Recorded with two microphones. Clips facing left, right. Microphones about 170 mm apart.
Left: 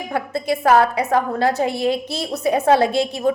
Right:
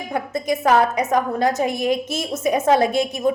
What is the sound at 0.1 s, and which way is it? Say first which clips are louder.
A woman's voice: even; 20° right (ahead or behind).